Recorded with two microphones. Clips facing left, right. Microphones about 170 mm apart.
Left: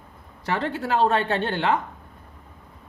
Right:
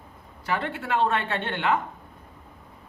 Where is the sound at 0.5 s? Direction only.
35° left (ahead or behind).